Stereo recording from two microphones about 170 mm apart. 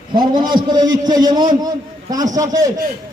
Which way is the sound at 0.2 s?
25° right (ahead or behind).